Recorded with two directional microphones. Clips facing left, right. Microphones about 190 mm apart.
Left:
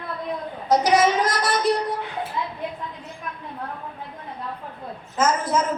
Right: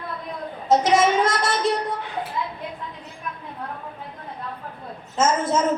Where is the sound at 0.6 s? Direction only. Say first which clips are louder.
Even; 25° right (ahead or behind).